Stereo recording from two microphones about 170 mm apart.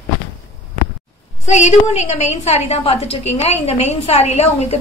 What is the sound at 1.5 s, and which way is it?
A woman's voice, 45° left (ahead or behind).